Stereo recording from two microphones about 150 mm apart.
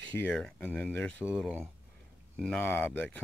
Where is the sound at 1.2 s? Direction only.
5° right (ahead or behind).